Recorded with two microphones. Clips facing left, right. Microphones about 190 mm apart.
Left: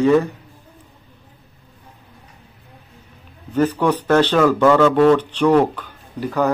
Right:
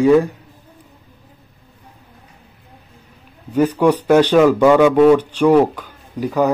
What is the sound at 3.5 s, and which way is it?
A man's voice, 10° right (ahead or behind).